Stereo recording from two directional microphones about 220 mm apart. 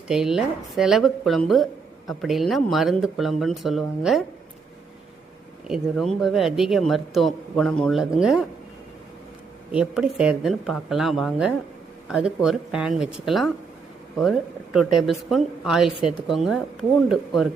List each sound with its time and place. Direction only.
0.1 s speech: centre (ahead or behind)
5.6 s speech: centre (ahead or behind)
9.7 s speech: 5° right (ahead or behind)